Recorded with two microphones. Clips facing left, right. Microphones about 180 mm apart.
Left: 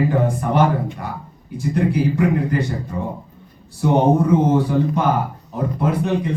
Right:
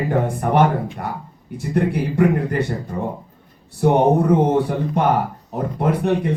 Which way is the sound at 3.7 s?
60° right (ahead or behind).